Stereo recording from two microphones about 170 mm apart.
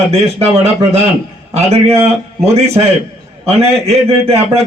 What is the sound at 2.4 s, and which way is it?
A man's voice, 40° right (ahead or behind).